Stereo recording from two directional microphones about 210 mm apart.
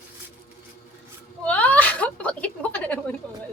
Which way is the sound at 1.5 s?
5° left (ahead or behind).